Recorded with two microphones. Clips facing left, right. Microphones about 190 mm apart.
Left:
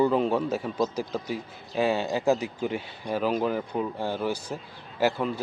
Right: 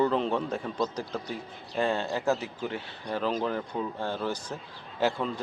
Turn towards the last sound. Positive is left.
turn(degrees=5)  # may be behind; listen again after turning